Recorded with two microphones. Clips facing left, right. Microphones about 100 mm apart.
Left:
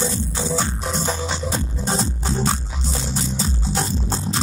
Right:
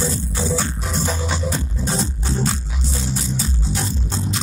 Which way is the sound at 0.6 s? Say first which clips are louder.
Even; 25° left (ahead or behind).